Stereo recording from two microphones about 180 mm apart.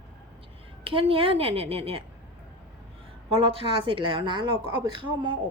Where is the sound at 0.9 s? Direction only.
30° right (ahead or behind).